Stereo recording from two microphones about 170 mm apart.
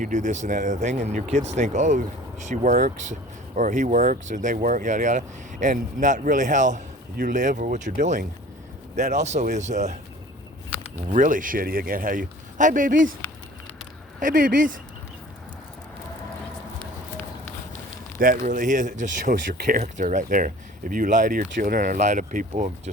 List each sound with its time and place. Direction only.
0.0 s speech: 45° right (ahead or behind)
11.1 s speech: 50° right (ahead or behind)
14.2 s speech: 50° right (ahead or behind)
18.2 s speech: 55° right (ahead or behind)